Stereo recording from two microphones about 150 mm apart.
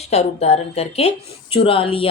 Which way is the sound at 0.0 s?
45° left (ahead or behind).